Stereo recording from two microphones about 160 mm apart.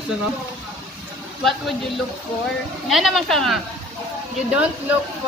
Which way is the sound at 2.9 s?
Centre (ahead or behind).